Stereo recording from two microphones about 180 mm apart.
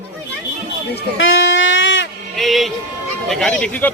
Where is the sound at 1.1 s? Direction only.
90° left.